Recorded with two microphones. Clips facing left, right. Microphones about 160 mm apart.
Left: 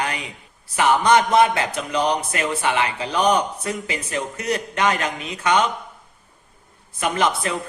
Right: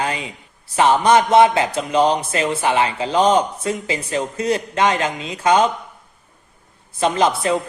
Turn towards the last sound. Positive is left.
turn(degrees=-30)  # may be behind; listen again after turning